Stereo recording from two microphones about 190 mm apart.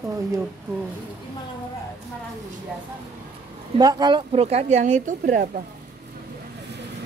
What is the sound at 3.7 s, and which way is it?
Speech, 20° right (ahead or behind).